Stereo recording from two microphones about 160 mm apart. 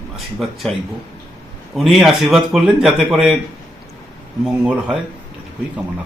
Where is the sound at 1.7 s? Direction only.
Centre (ahead or behind).